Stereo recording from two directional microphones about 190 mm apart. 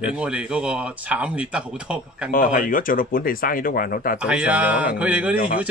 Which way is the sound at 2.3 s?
45° left (ahead or behind).